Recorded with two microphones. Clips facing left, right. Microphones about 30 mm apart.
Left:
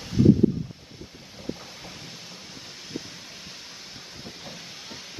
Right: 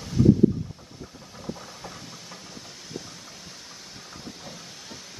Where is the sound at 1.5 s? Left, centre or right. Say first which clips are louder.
Left 2 dB; centre.